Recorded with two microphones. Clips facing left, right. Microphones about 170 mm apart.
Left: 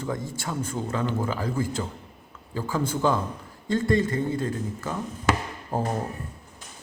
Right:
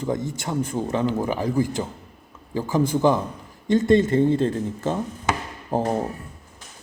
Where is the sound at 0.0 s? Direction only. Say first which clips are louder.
Right 5 dB; 20° right (ahead or behind).